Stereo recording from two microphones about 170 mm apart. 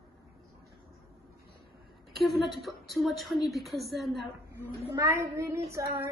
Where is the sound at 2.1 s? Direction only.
Centre (ahead or behind).